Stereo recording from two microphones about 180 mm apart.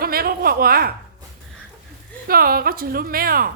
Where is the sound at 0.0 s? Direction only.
55° right (ahead or behind).